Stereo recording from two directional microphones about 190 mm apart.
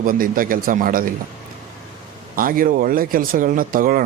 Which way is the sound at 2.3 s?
45° right (ahead or behind).